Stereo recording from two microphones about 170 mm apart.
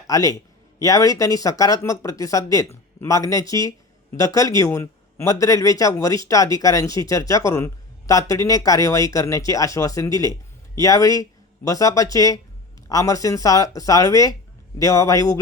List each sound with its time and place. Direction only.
0.1 s a man's voice: 20° left (ahead or behind)